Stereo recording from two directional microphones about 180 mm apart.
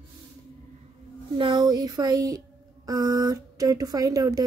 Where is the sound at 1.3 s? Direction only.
25° right (ahead or behind).